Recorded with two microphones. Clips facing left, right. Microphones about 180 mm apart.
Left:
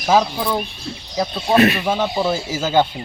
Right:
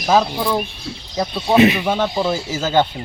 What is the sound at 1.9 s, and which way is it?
Speech, 10° left (ahead or behind).